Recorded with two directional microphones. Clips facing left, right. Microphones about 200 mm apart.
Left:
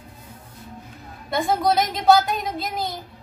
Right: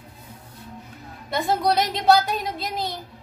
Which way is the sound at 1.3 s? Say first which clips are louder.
Left 1 dB; centre (ahead or behind).